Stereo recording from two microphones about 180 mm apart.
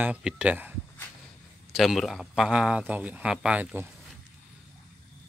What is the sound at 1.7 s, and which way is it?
Speech, centre (ahead or behind).